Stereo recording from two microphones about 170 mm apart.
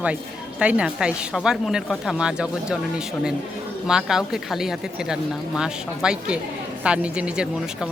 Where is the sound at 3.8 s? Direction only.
5° right (ahead or behind).